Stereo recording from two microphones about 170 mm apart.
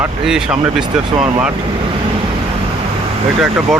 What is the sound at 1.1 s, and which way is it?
Speech, 25° right (ahead or behind).